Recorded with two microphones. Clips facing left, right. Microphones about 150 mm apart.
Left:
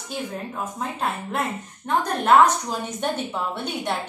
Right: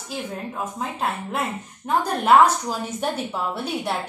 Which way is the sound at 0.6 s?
Centre (ahead or behind).